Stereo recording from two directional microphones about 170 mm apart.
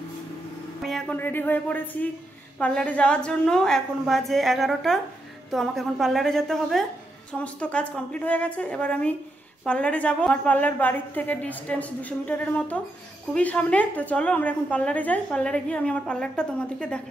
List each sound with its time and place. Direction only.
0.8 s a woman's voice: 5° left (ahead or behind)